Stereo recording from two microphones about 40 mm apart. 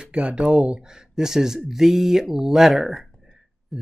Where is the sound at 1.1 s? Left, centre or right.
Centre.